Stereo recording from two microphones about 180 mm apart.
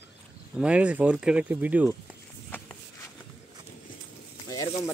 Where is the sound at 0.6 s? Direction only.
5° right (ahead or behind).